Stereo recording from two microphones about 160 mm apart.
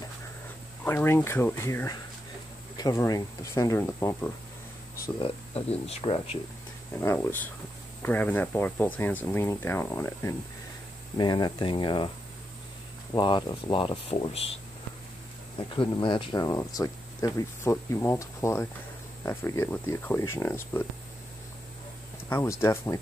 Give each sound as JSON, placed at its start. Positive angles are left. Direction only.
{"t": 0.8, "sound": "speech", "side_deg": 15}
{"t": 5.2, "sound": "speech", "side_deg": 40}
{"t": 7.0, "sound": "speech", "side_deg": 15}
{"t": 13.1, "sound": "speech", "side_deg": 30}
{"t": 15.7, "sound": "speech", "side_deg": 30}
{"t": 22.3, "sound": "speech", "side_deg": 15}